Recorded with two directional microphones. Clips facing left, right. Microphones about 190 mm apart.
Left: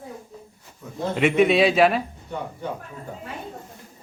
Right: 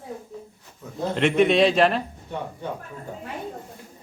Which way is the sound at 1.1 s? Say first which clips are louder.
Left 1 dB; 5° left (ahead or behind).